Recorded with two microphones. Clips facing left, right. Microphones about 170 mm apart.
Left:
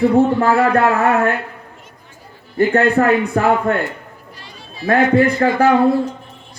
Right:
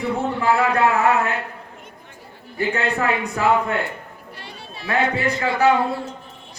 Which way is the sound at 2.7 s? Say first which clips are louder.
Left 9 dB; 55° left (ahead or behind).